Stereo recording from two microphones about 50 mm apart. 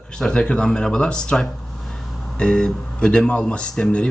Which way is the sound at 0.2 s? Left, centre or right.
Centre.